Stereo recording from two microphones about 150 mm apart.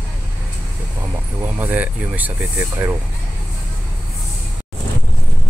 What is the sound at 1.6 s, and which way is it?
Speech, 10° right (ahead or behind).